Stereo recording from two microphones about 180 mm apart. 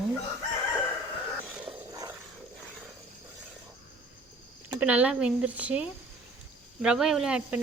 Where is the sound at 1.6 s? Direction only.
20° right (ahead or behind).